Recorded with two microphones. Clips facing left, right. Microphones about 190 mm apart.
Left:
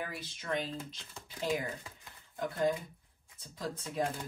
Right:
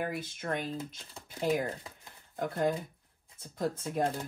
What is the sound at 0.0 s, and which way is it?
Speech, 55° right (ahead or behind).